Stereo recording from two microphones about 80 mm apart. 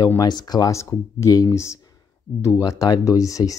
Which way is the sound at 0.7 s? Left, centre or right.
Left.